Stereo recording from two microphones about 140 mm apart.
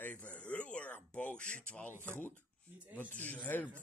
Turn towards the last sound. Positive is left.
turn(degrees=10)  # may be behind; listen again after turning